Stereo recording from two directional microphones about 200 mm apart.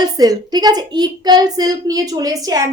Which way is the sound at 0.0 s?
20° right (ahead or behind).